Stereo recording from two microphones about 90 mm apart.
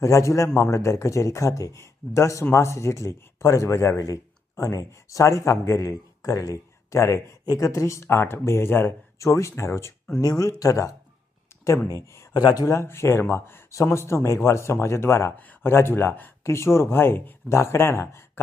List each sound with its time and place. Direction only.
0.0 s a man's voice: 35° left (ahead or behind)
12.3 s speech: 50° left (ahead or behind)
12.6 s a man's voice: 30° left (ahead or behind)